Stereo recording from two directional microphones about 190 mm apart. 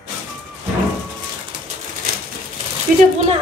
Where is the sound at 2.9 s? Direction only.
45° right (ahead or behind).